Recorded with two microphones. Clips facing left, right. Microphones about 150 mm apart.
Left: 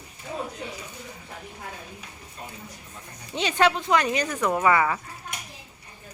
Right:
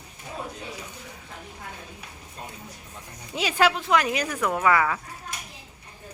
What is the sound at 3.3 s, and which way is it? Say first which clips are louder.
Speech: even; 5° right (ahead or behind).